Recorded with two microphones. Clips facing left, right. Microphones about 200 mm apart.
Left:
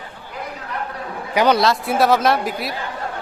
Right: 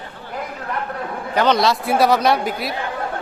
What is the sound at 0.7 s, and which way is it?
Chatter, 50° right (ahead or behind).